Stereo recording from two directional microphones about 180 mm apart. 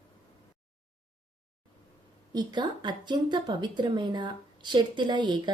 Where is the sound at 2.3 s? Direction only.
25° right (ahead or behind).